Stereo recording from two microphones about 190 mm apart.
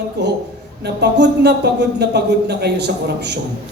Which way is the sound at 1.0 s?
60° right (ahead or behind).